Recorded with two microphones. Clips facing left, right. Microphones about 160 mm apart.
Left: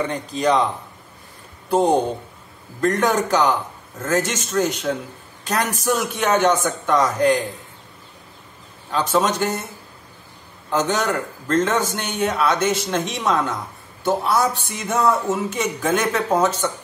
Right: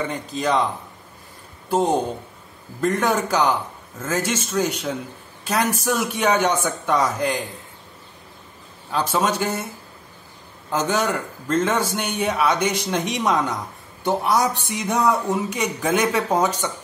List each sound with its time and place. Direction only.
0.1 s a man's voice: centre (ahead or behind)
1.7 s a man's voice: 5° right (ahead or behind)
5.9 s a man's voice: 10° right (ahead or behind)
8.9 s a man's voice: 10° right (ahead or behind)
10.7 s a man's voice: 10° right (ahead or behind)